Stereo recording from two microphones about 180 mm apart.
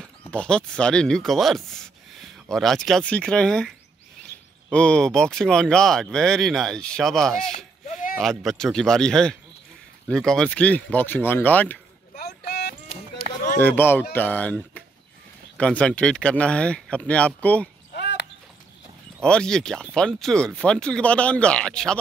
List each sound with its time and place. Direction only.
0.0 s speech: 5° left (ahead or behind)
12.2 s a sound: 65° left (ahead or behind)
13.6 s speech: 10° left (ahead or behind)
17.9 s basketball bounce: 70° left (ahead or behind)
19.2 s speech: 5° left (ahead or behind)